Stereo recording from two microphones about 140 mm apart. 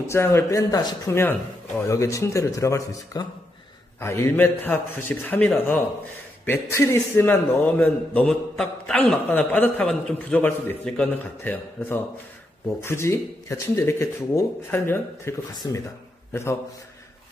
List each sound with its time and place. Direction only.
0.0 s a man's voice: 20° left (ahead or behind)